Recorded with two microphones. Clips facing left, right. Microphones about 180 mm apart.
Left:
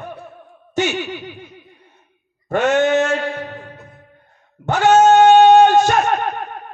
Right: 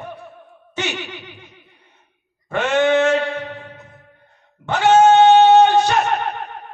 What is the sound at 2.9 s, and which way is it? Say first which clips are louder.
Mantra: right 1 dB; 45° left (ahead or behind).